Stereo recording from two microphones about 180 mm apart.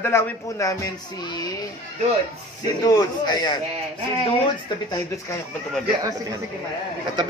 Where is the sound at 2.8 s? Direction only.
20° left (ahead or behind).